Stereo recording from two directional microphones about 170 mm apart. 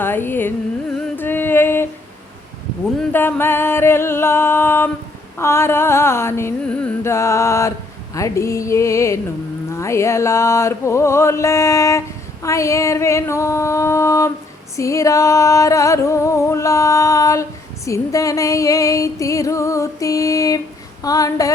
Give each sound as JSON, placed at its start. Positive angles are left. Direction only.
{"t": 0.0, "sound": "carnatic music", "side_deg": 10}
{"t": 3.0, "sound": "music", "side_deg": 10}